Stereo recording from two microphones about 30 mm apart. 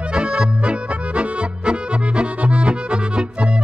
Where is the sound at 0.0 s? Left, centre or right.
Right.